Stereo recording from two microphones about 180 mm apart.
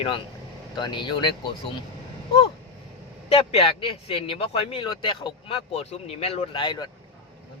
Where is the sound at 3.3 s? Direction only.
35° left (ahead or behind).